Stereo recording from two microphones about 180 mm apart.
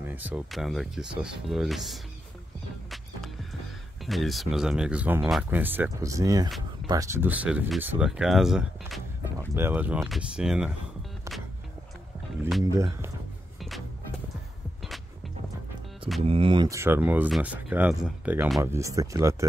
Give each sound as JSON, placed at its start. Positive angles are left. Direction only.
{"t": 0.0, "sound": "speech", "side_deg": -10}
{"t": 4.0, "sound": "speech", "side_deg": 0}
{"t": 9.4, "sound": "speech", "side_deg": -15}
{"t": 12.7, "sound": "speech", "side_deg": -15}
{"t": 13.6, "sound": "music", "side_deg": 0}
{"t": 16.2, "sound": "speech", "side_deg": -30}